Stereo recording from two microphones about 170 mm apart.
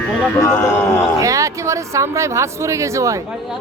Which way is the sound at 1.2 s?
20° right (ahead or behind).